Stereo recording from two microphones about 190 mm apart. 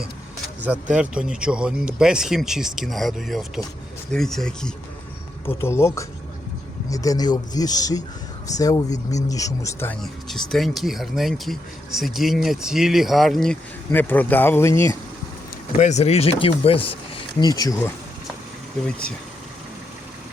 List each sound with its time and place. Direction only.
0.9 s speech: 5° right (ahead or behind)
5.5 s speech: 15° left (ahead or behind)
15.8 s speech: 35° left (ahead or behind); by 17.9 s 20° left (ahead or behind)